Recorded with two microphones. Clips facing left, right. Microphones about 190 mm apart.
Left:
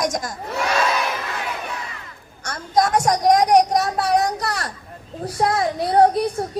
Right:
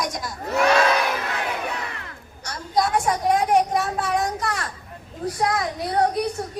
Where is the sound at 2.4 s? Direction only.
45° left (ahead or behind).